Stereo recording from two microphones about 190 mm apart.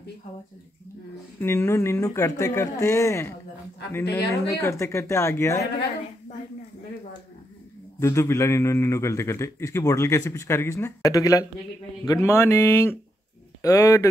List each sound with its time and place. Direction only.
1.4 s a man's voice: 15° left (ahead or behind)
8.0 s a man's voice: 15° left (ahead or behind)